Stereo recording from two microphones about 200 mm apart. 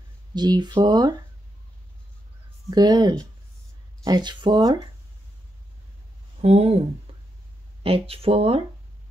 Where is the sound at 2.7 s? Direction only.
20° right (ahead or behind).